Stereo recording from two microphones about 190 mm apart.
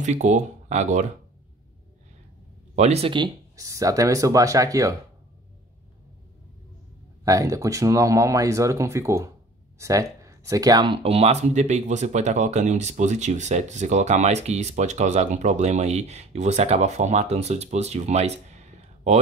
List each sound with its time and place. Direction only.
0.0 s speech: 40° right (ahead or behind)
2.7 s speech: 35° right (ahead or behind); by 4.9 s 15° right (ahead or behind)
7.2 s speech: 15° right (ahead or behind); by 19.1 s 35° right (ahead or behind)